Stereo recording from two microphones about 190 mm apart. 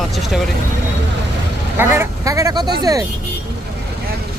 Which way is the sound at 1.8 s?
15° right (ahead or behind).